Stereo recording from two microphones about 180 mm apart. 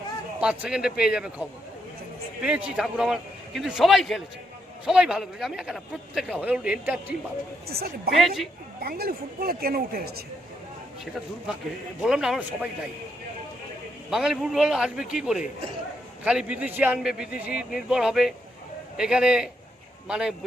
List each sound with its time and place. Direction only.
0.3 s a man's voice: 5° right (ahead or behind)
7.7 s speech: 60° right (ahead or behind)
8.1 s a man's voice: centre (ahead or behind)
8.8 s speech: 55° right (ahead or behind)
12.0 s a man's voice: 5° right (ahead or behind)
14.1 s a man's voice: centre (ahead or behind)